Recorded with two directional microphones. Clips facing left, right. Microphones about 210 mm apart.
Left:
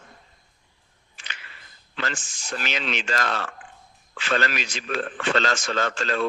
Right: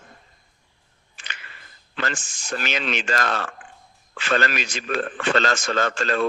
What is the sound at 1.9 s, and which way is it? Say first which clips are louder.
A man's voice: right 2 dB; 50° right (ahead or behind).